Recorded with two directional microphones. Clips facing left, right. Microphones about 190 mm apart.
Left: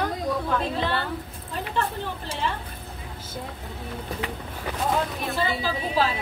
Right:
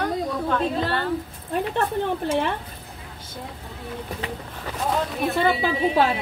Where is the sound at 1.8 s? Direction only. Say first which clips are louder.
Right 3 dB; 55° right (ahead or behind).